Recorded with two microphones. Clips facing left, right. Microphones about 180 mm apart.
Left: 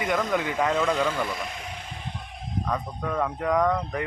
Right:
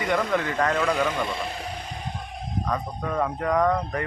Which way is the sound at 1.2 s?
30° right (ahead or behind).